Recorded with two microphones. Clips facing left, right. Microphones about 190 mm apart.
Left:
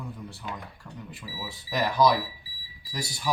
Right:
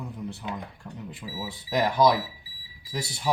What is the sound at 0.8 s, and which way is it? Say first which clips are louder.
Speech: right 3 dB; 20° right (ahead or behind).